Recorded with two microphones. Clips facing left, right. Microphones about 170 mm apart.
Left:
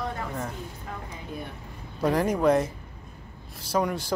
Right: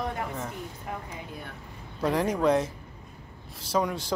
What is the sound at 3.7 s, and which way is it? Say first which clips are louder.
Speech: left 1 dB; centre (ahead or behind).